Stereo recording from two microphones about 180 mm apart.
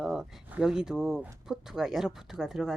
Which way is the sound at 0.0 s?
Centre (ahead or behind).